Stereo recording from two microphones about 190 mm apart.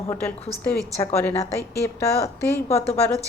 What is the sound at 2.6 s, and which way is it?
Speech, 30° left (ahead or behind).